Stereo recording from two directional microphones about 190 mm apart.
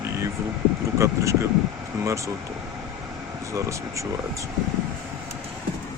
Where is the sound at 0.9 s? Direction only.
15° right (ahead or behind).